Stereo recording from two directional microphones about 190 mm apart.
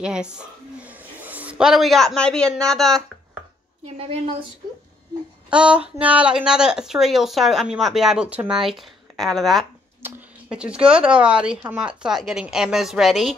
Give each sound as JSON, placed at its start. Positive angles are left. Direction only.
{"t": 0.0, "sound": "a woman's voice", "side_deg": -5}
{"t": 3.8, "sound": "a woman's voice", "side_deg": -30}
{"t": 5.5, "sound": "speech", "side_deg": -5}